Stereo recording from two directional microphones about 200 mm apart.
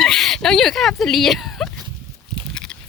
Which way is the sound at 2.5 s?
5° left (ahead or behind).